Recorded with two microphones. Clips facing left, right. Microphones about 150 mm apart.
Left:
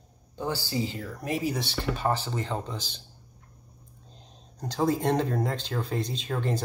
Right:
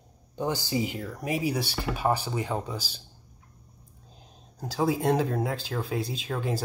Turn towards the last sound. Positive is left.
turn(degrees=-5)  # may be behind; listen again after turning